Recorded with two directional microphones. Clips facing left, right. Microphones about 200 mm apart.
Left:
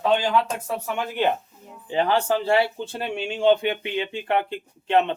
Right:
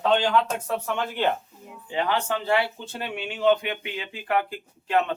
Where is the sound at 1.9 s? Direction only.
30° left (ahead or behind).